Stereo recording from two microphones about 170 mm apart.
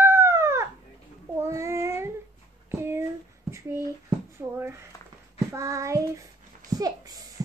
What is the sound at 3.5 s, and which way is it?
A child's voice, 15° right (ahead or behind).